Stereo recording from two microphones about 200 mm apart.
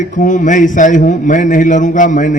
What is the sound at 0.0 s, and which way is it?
A man's voice, 40° left (ahead or behind).